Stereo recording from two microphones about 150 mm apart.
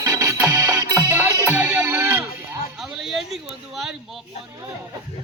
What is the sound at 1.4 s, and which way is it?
Music, 10° right (ahead or behind).